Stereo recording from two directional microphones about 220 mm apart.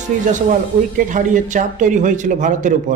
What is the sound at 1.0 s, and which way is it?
A woman's voice, 35° right (ahead or behind).